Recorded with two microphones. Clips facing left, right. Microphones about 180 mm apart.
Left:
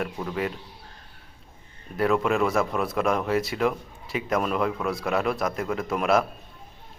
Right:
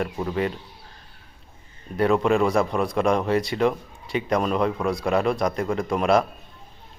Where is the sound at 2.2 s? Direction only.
Centre (ahead or behind).